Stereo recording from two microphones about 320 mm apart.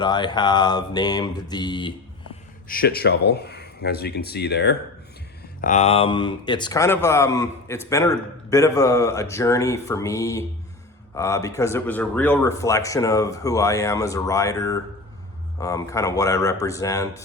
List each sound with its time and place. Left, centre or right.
0.0 s speech: centre
2.6 s speech: left; by 17.2 s centre